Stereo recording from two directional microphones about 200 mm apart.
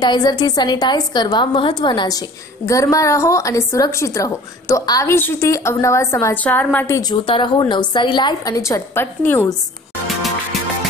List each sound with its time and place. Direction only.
0.0 s a woman's voice: 20° left (ahead or behind)
10.0 s music: centre (ahead or behind)